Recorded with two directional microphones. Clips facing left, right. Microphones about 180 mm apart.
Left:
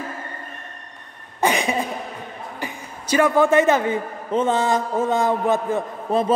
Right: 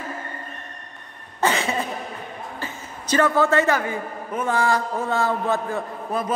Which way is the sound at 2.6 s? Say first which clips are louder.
Left 2 dB; 10° left (ahead or behind).